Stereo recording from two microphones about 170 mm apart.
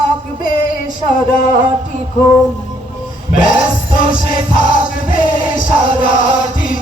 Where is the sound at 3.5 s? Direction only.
55° left (ahead or behind).